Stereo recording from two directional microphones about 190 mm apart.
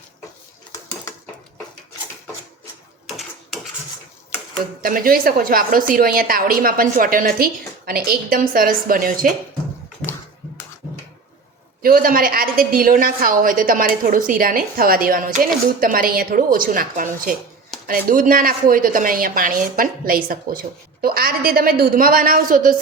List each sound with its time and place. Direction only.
3.1 s a sound: centre (ahead or behind)
4.8 s a woman's voice: 50° right (ahead or behind)
11.8 s a woman's voice: 50° right (ahead or behind)